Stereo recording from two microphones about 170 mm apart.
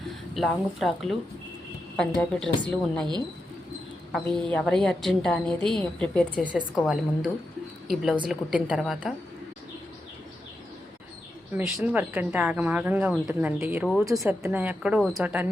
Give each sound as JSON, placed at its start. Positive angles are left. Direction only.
{"t": 0.3, "sound": "a woman's voice", "side_deg": 0}
{"t": 4.1, "sound": "a woman's voice", "side_deg": 5}
{"t": 11.5, "sound": "a woman's voice", "side_deg": -5}